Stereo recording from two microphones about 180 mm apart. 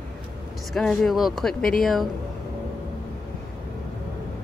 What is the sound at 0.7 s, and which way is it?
Speech, centre (ahead or behind).